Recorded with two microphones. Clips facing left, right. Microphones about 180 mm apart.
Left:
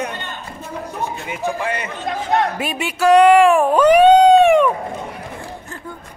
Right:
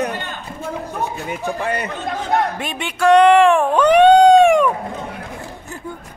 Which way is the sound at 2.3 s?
5° left (ahead or behind).